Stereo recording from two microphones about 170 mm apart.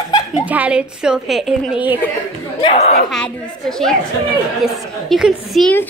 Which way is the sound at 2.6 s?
35° left (ahead or behind).